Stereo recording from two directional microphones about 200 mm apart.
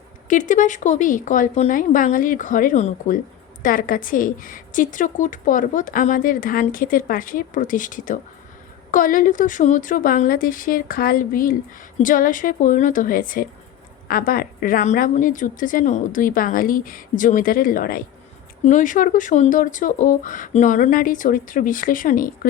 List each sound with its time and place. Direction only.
0.3 s a woman's voice: 40° left (ahead or behind)